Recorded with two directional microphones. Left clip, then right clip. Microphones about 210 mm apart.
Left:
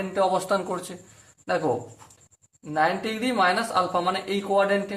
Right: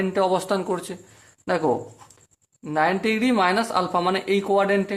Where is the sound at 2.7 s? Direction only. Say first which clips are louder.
Right 3 dB; 35° right (ahead or behind).